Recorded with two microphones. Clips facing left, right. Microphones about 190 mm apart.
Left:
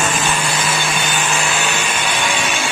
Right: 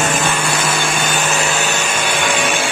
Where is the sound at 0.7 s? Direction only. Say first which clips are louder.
Right 2 dB; 50° right (ahead or behind).